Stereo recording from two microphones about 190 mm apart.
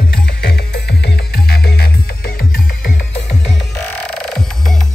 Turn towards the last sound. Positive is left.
turn(degrees=5)  # may be behind; listen again after turning